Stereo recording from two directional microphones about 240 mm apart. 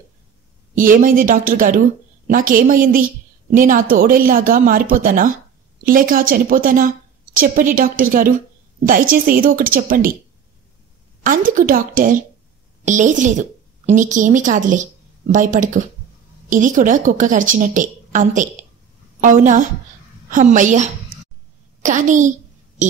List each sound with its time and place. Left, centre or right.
0.7 s a woman's voice: right
11.2 s a woman's voice: right